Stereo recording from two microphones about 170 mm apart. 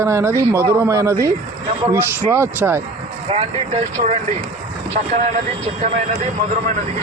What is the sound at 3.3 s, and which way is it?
Speech, 35° right (ahead or behind).